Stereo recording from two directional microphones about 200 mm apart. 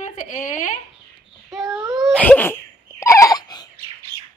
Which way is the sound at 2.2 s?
10° left (ahead or behind).